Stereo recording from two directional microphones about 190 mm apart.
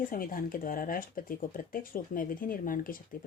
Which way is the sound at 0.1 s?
50° left (ahead or behind).